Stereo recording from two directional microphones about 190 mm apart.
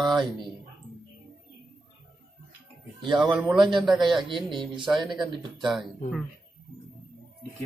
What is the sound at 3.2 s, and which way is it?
Speech, centre (ahead or behind).